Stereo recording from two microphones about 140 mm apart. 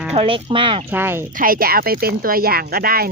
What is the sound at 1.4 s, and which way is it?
Speech, 90° right.